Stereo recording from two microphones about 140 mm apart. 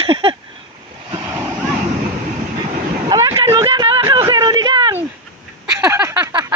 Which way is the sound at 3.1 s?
25° right (ahead or behind).